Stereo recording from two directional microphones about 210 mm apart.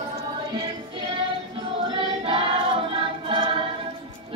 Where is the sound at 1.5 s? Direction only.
25° right (ahead or behind).